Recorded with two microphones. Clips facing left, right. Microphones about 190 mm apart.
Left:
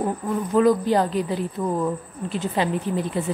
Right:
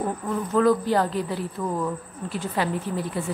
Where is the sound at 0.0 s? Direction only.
15° left (ahead or behind).